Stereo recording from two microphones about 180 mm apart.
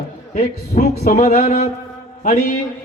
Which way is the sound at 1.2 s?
40° left (ahead or behind).